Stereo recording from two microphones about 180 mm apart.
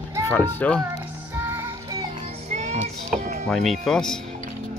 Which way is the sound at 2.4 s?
40° right (ahead or behind).